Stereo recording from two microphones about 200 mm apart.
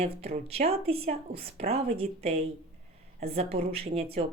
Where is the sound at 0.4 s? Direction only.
30° right (ahead or behind).